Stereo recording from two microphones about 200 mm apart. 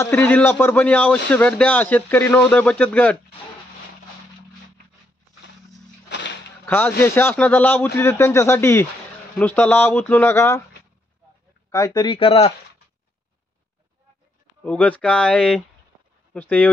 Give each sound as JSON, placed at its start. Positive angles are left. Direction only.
{"t": 0.0, "sound": "a man's voice", "side_deg": 10}
{"t": 6.0, "sound": "a sound", "side_deg": 60}
{"t": 6.6, "sound": "a man's voice", "side_deg": 10}
{"t": 11.7, "sound": "speech", "side_deg": 20}
{"t": 14.6, "sound": "a man's voice", "side_deg": 5}